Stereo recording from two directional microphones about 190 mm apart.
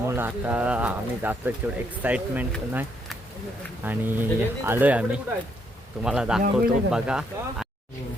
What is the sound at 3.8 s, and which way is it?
Speech, 10° right (ahead or behind).